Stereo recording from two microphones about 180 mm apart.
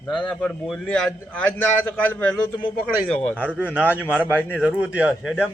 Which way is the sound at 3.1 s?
10° left (ahead or behind).